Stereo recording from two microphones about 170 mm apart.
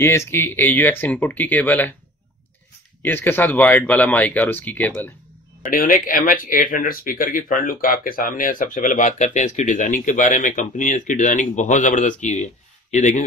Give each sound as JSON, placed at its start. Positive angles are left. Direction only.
{"t": 0.0, "sound": "speech", "side_deg": 15}
{"t": 3.0, "sound": "speech", "side_deg": 10}
{"t": 5.7, "sound": "speech", "side_deg": 55}